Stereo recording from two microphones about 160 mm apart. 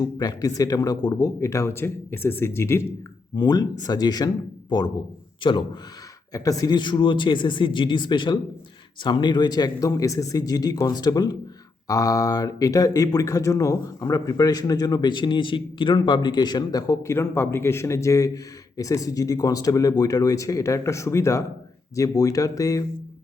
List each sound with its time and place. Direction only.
0.0 s speech: 25° left (ahead or behind)